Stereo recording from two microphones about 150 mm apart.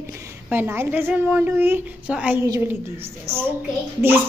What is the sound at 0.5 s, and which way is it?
A woman's voice, 15° right (ahead or behind).